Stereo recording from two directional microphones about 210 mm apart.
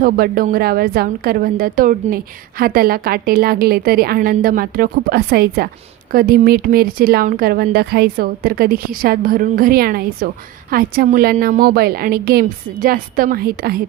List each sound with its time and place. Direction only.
0.0 s speech: 45° right (ahead or behind)